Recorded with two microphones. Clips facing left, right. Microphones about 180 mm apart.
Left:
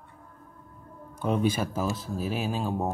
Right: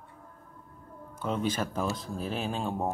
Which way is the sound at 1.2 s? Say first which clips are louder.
Left 4 dB; 10° left (ahead or behind).